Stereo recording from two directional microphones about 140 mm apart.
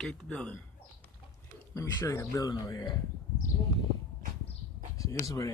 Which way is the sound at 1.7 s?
20° left (ahead or behind).